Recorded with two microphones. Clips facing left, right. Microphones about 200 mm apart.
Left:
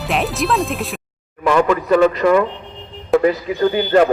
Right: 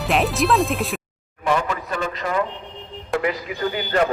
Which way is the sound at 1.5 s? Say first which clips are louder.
Left 8 dB; 80° left.